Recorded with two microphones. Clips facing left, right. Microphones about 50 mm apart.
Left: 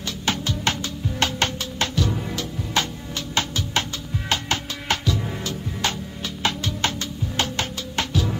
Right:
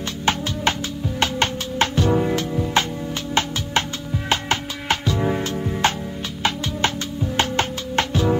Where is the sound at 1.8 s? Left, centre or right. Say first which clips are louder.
Right 7 dB; right.